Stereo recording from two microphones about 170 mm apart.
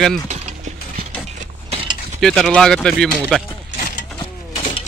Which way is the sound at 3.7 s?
50° left (ahead or behind).